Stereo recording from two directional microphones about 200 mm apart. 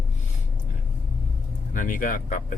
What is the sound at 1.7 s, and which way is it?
Speech, 40° left (ahead or behind).